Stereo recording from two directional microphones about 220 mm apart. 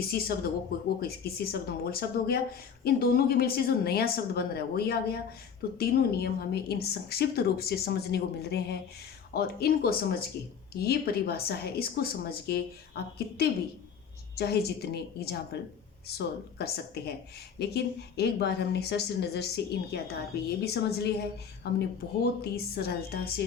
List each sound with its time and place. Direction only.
0.1 s speech: 45° left (ahead or behind)